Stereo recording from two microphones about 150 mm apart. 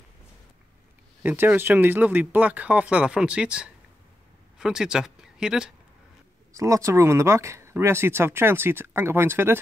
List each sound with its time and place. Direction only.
1.2 s speech: 15° right (ahead or behind)
6.5 s speech: 20° right (ahead or behind)